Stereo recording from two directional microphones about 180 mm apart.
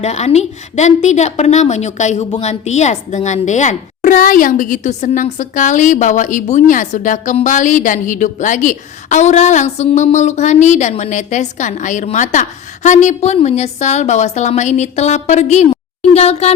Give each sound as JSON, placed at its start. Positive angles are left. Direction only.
{"t": 0.0, "sound": "a woman's voice", "side_deg": 40}